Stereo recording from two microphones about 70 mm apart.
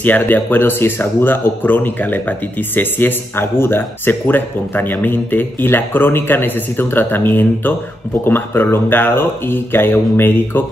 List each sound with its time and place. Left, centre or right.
0.0 s speech: left